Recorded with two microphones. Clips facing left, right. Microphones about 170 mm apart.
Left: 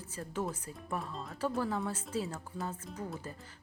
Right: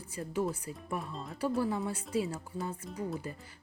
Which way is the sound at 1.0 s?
Centre (ahead or behind).